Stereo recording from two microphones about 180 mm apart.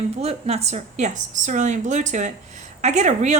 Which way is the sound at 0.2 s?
35° right (ahead or behind).